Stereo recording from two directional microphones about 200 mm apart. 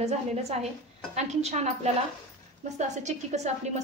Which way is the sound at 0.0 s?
30° right (ahead or behind).